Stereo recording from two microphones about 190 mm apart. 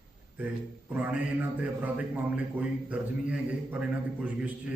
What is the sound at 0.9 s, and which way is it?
A man's voice, 10° right (ahead or behind).